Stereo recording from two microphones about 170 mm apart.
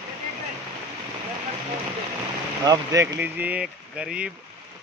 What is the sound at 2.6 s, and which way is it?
Speech, 20° right (ahead or behind).